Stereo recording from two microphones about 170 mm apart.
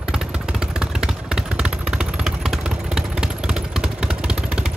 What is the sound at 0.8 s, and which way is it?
Vehicle, 5° right (ahead or behind).